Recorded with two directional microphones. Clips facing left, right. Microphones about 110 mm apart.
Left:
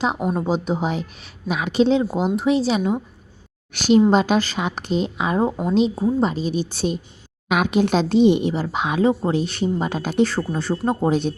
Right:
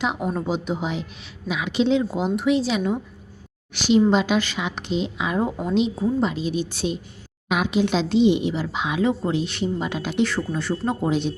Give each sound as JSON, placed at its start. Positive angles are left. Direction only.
{"t": 0.3, "sound": "a woman's voice", "side_deg": 40}
{"t": 3.7, "sound": "a woman's voice", "side_deg": 50}
{"t": 7.5, "sound": "a woman's voice", "side_deg": 55}